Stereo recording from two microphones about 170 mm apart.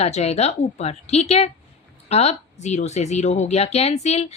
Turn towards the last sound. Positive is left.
turn(degrees=40)  # may be behind; listen again after turning